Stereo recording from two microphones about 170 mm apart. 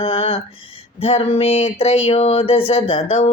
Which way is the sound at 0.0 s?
35° left (ahead or behind).